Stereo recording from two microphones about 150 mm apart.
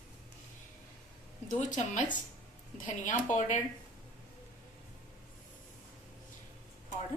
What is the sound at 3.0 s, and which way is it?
Speech, 55° left (ahead or behind).